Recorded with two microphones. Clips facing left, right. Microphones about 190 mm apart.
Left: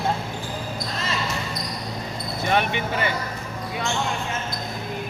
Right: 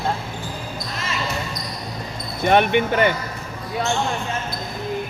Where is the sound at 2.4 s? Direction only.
60° right (ahead or behind).